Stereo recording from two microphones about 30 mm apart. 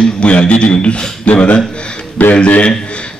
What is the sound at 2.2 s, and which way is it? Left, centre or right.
Speech, left.